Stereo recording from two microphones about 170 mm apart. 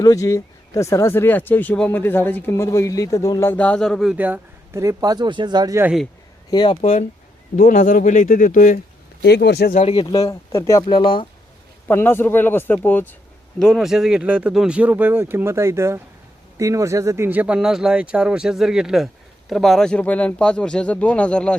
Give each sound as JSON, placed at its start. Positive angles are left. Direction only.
{"t": 0.0, "sound": "speech", "side_deg": 20}
{"t": 5.8, "sound": "speech", "side_deg": -5}
{"t": 6.5, "sound": "speech", "side_deg": 25}
{"t": 7.5, "sound": "speech", "side_deg": 50}
{"t": 9.2, "sound": "speech", "side_deg": 80}
{"t": 9.9, "sound": "speech", "side_deg": 25}
{"t": 10.8, "sound": "speech", "side_deg": 30}
{"t": 11.9, "sound": "speech", "side_deg": 15}
{"t": 13.6, "sound": "speech", "side_deg": 0}